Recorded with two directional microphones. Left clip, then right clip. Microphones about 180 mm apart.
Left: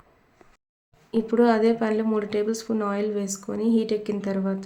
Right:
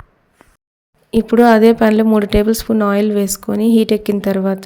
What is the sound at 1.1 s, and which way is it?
Speech, 45° right (ahead or behind).